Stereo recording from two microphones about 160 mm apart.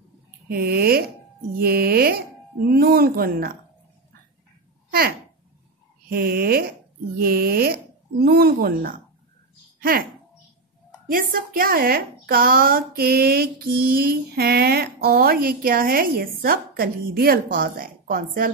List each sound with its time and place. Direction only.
0.5 s a woman's voice: 70° right (ahead or behind)
6.0 s a woman's voice: 70° right (ahead or behind)
11.1 s a woman's voice: 65° right (ahead or behind)